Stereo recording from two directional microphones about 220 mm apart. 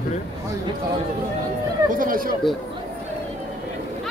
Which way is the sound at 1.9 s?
40° right (ahead or behind).